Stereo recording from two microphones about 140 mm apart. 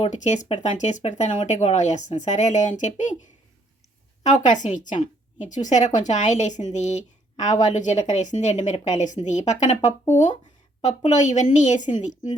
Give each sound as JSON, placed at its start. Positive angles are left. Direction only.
{"t": 0.0, "sound": "a woman's voice", "side_deg": 55}
{"t": 4.2, "sound": "a woman's voice", "side_deg": 60}